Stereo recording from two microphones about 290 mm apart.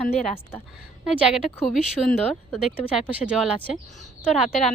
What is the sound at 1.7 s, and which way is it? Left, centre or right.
Speech, centre.